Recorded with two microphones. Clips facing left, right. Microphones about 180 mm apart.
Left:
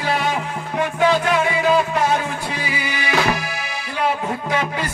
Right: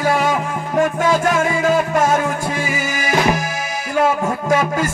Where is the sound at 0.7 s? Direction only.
45° right (ahead or behind).